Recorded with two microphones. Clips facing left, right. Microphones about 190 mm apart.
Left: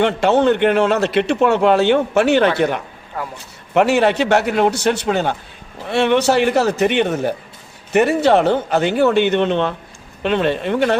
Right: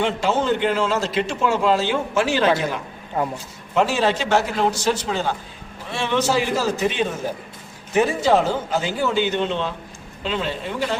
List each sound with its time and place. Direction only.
0.0 s a man's voice: 65° left (ahead or behind)